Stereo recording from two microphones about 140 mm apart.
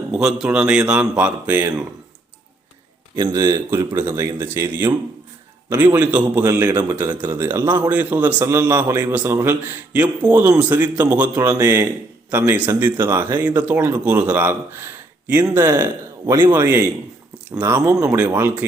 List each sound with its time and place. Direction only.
0.1 s a man's voice: 5° right (ahead or behind)
3.2 s a man's voice: 30° right (ahead or behind)
3.7 s a man's voice: 15° right (ahead or behind)
16.5 s a man's voice: 15° right (ahead or behind)